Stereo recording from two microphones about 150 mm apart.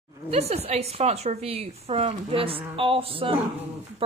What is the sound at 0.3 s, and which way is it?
A woman's voice, 45° right (ahead or behind).